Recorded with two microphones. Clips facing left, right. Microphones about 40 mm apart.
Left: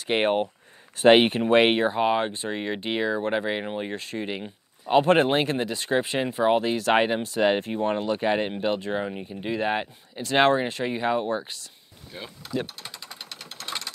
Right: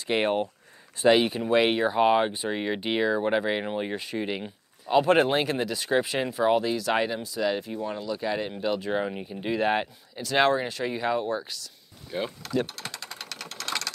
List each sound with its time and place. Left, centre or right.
0.0 s speech: left
1.0 s speech: left
2.0 s speech: centre
4.8 s speech: left
8.9 s speech: centre
10.2 s speech: left
12.1 s speech: right
12.6 s speech: right
13.1 s sewing machine: centre